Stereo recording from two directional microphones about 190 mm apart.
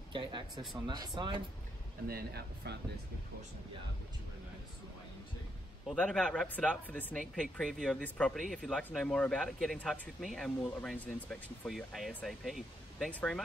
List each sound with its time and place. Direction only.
0.1 s a sound: 25° right (ahead or behind)
0.8 s speech: 20° right (ahead or behind)
2.0 s speech: 55° right (ahead or behind)
5.9 s speech: 5° left (ahead or behind)